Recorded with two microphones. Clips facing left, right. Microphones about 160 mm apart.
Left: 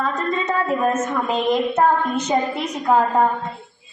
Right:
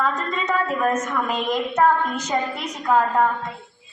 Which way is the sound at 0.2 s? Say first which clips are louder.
Left 2 dB; 25° left (ahead or behind).